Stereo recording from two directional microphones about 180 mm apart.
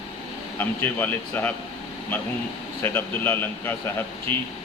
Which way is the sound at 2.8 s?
10° left (ahead or behind).